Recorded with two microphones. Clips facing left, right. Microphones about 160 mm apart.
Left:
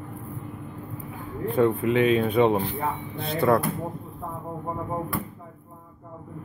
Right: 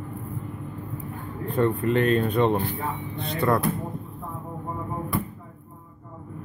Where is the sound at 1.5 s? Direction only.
5° left (ahead or behind).